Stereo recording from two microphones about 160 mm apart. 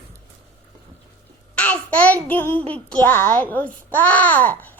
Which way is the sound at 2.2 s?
10° left (ahead or behind).